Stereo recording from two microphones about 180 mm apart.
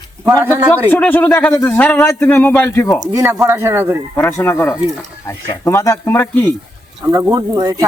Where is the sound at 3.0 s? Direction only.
20° right (ahead or behind).